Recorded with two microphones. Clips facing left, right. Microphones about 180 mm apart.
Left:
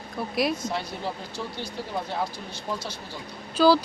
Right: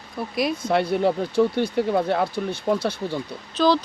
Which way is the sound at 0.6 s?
60° right (ahead or behind).